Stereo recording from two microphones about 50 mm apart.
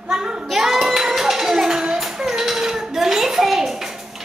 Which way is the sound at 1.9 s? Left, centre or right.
Centre.